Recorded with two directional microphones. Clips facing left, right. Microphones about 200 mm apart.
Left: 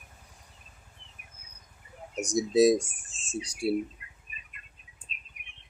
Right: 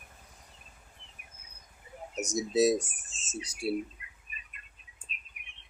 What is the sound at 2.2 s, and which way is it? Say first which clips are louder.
Speech: left 4 dB; 15° left (ahead or behind).